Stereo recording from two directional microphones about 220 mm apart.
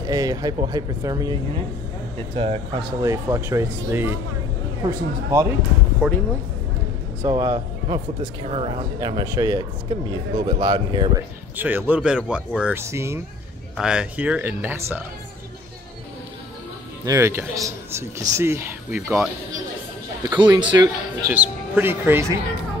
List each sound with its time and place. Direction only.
0.0 s speech: 15° right (ahead or behind)
3.1 s speech: 15° right (ahead or behind)
7.2 s speech: 15° right (ahead or behind)
11.5 s speech: 10° right (ahead or behind)
17.0 s speech: 15° right (ahead or behind)
20.2 s speech: 20° right (ahead or behind)
21.3 s speech: 10° right (ahead or behind)